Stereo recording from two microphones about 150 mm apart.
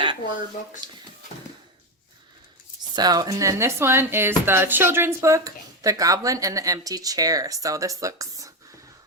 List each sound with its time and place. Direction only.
2.9 s a woman's voice: 25° right (ahead or behind)